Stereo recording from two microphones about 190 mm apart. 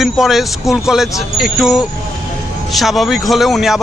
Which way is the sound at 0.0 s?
Centre (ahead or behind).